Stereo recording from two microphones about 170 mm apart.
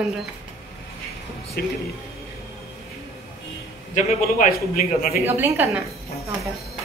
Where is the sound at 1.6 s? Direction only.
65° left (ahead or behind).